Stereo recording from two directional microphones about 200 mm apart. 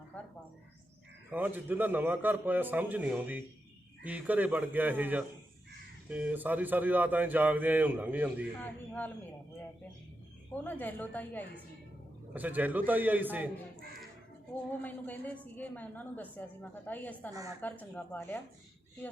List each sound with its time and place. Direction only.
1.3 s speech: 10° right (ahead or behind)
8.9 s a woman's voice: 10° left (ahead or behind)
10.5 s a woman's voice: 10° left (ahead or behind)
12.3 s speech: 10° right (ahead or behind)
14.8 s a woman's voice: 10° left (ahead or behind)